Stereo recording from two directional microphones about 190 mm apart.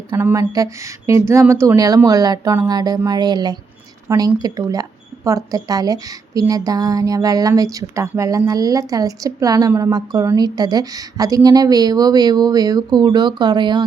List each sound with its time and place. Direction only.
0.1 s speech: 15° right (ahead or behind)